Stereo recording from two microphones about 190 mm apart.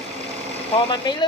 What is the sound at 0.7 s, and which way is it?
Speech, 30° left (ahead or behind).